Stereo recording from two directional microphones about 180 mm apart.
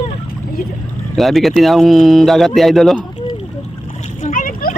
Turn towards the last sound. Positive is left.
turn(degrees=50)  # may be behind; listen again after turning